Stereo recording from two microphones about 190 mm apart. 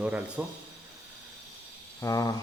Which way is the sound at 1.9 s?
15° left (ahead or behind).